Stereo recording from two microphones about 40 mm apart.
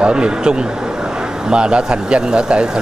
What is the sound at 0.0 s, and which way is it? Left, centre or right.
Speech, right.